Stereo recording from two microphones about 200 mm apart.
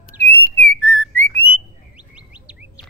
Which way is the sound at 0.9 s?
5° left (ahead or behind).